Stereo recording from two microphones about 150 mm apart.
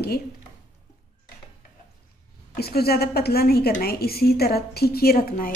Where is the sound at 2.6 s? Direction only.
90° left.